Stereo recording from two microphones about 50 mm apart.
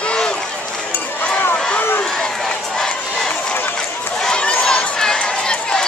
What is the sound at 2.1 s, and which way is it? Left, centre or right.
Crowd, centre.